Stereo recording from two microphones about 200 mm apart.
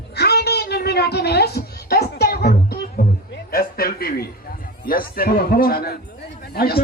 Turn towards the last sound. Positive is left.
turn(degrees=50)  # may be behind; listen again after turning